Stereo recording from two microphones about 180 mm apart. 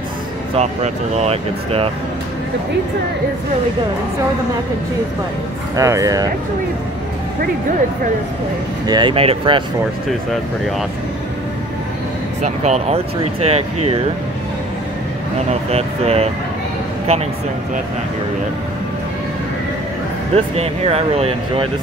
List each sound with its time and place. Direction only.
0.6 s speech: 35° right (ahead or behind)
5.8 s speech: 15° right (ahead or behind)
8.8 s speech: 25° right (ahead or behind)
12.4 s speech: 40° right (ahead or behind)
15.7 s speech: 35° right (ahead or behind)
20.3 s speech: 35° right (ahead or behind)